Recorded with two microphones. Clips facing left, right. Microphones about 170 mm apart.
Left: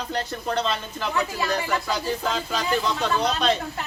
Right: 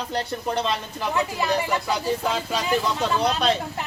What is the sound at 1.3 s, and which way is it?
Speech, 10° right (ahead or behind).